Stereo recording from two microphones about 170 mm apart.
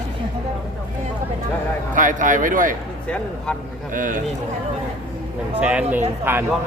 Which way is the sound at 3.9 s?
50° right (ahead or behind).